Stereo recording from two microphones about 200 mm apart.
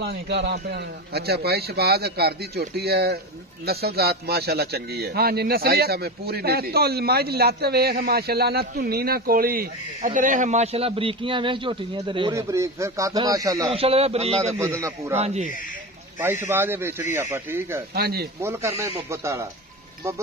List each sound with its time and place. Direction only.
0.0 s a man's voice: 55° right (ahead or behind); by 13.7 s 15° right (ahead or behind)
13.7 s speech: 30° right (ahead or behind)
14.5 s speech: 15° right (ahead or behind)
15.1 s speech: 30° right (ahead or behind)
16.2 s speech: 10° right (ahead or behind)
17.9 s a man's voice: 50° right (ahead or behind)
18.4 s speech: 15° right (ahead or behind)